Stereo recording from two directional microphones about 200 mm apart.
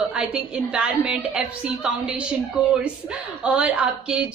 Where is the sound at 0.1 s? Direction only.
5° right (ahead or behind).